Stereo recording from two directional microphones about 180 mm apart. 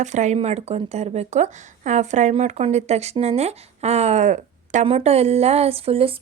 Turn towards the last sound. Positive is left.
turn(degrees=-30)  # may be behind; listen again after turning